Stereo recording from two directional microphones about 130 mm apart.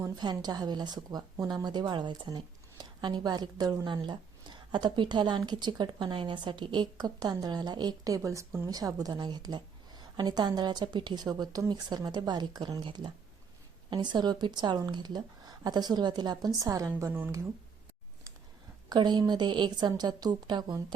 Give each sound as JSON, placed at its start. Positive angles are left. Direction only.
{"t": 0.0, "sound": "a woman's voice", "side_deg": -30}
{"t": 17.0, "sound": "speech", "side_deg": -15}
{"t": 18.9, "sound": "speech", "side_deg": -35}